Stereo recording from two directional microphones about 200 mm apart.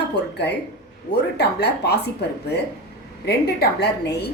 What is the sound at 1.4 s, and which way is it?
Speech, 55° left (ahead or behind).